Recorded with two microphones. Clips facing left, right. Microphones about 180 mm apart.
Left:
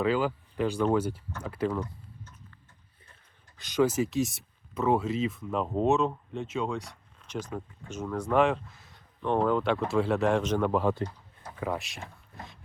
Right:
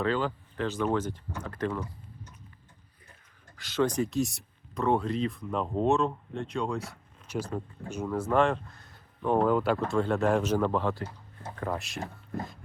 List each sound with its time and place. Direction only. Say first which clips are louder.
0.0 s speech: left 2 dB; 10° left (ahead or behind)
3.6 s speech: left 2 dB; 15° left (ahead or behind)
3.8 s speech: left 1 dB; 5° left (ahead or behind)
10.6 s speech: left 2 dB; 10° left (ahead or behind)